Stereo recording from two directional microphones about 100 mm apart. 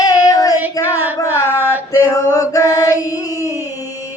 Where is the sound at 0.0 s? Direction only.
35° left (ahead or behind).